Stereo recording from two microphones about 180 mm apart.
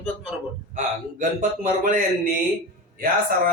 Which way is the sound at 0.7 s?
45° right (ahead or behind).